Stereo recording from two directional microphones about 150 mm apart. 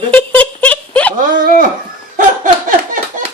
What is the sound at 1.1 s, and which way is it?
Laughter, 65° right (ahead or behind).